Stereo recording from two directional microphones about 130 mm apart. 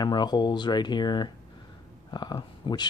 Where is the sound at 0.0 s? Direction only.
35° left (ahead or behind).